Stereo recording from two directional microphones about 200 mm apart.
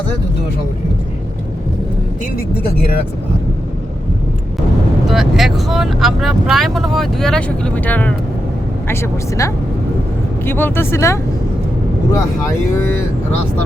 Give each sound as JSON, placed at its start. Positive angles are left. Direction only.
{"t": 5.0, "sound": "speech", "side_deg": 0}